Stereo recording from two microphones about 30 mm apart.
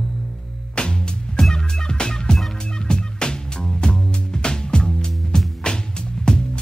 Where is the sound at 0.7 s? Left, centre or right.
Left.